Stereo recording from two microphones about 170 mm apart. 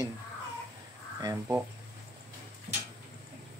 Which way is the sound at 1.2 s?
20° right (ahead or behind).